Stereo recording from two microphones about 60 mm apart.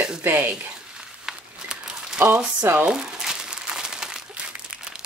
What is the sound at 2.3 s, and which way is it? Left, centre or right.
Speech, right.